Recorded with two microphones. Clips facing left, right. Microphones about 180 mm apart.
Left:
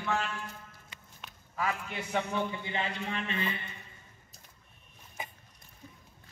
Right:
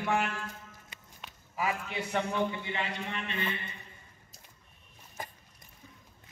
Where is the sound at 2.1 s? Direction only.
Centre (ahead or behind).